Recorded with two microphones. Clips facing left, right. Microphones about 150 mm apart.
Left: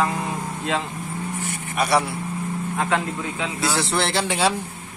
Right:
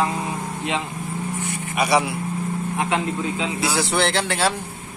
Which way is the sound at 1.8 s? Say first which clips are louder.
Right 1 dB; centre (ahead or behind).